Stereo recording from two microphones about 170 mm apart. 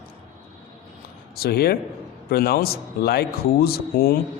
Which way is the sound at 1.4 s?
65° left (ahead or behind).